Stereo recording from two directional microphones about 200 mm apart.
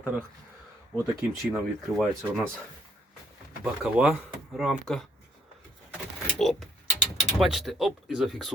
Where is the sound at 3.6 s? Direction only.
5° right (ahead or behind).